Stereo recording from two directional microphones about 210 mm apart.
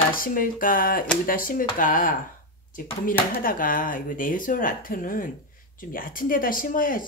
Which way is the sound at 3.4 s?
40° left (ahead or behind).